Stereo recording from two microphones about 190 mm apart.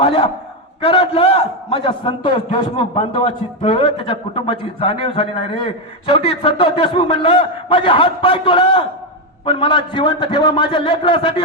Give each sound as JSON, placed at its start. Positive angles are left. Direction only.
{"t": 0.0, "sound": "a man's voice", "side_deg": 25}